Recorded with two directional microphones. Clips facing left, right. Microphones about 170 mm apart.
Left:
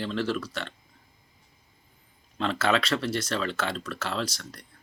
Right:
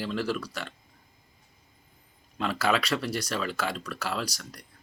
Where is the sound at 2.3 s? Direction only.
10° right (ahead or behind).